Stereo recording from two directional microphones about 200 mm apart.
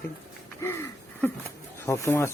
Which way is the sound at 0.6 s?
10° left (ahead or behind).